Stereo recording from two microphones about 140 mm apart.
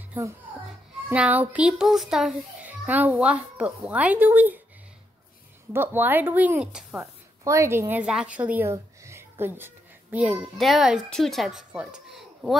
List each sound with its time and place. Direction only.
1.1 s a child's voice: 10° right (ahead or behind)
5.7 s speech: 15° right (ahead or behind)
7.4 s speech: 20° right (ahead or behind)
8.7 s a sound: 20° right (ahead or behind)
10.1 s a child's voice: 5° right (ahead or behind)